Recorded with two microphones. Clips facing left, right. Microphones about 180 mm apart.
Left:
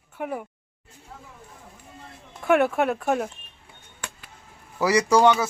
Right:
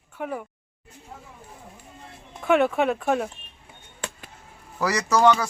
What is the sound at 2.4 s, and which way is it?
Speech, 5° left (ahead or behind).